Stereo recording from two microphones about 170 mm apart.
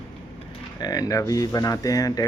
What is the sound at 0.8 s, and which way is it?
Speech, 20° left (ahead or behind).